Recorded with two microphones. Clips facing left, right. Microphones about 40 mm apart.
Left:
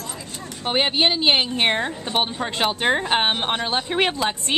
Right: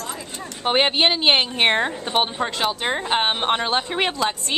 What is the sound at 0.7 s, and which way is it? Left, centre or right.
Speech, centre.